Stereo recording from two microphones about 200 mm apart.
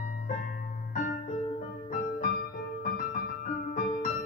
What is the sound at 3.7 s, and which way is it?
Music, 45° left (ahead or behind).